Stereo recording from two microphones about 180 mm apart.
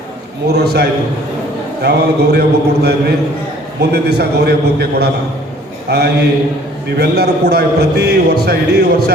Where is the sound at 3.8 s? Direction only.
65° right (ahead or behind).